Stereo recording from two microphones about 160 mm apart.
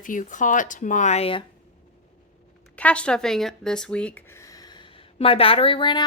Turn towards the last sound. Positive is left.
turn(degrees=30)  # may be behind; listen again after turning